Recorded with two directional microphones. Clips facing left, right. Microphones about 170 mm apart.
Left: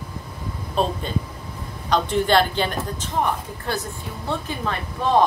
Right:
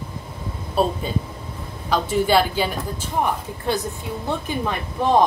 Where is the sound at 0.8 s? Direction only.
10° right (ahead or behind).